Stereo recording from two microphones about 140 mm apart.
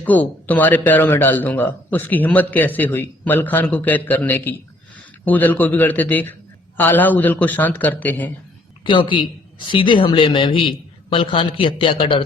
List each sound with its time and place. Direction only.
0.0 s speech: 10° left (ahead or behind)
8.8 s a man's voice: 35° left (ahead or behind)